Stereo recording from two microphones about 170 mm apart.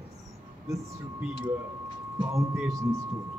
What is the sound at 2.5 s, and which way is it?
Speech, 15° right (ahead or behind).